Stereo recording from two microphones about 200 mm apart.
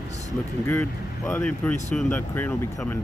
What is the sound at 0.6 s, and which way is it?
Speech, 10° left (ahead or behind).